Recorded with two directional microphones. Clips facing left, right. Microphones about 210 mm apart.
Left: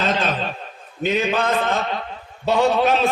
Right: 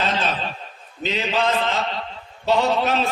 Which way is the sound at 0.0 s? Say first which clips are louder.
Left 2 dB; 50° left (ahead or behind).